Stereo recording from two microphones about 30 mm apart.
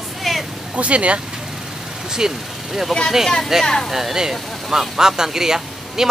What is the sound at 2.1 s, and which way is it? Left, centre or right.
Speech, right.